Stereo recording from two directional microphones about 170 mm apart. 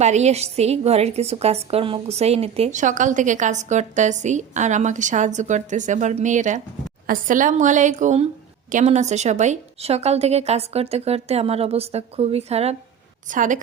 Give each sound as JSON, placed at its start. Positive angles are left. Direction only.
{"t": 0.0, "sound": "a woman's voice", "side_deg": -40}
{"t": 13.3, "sound": "a woman's voice", "side_deg": -50}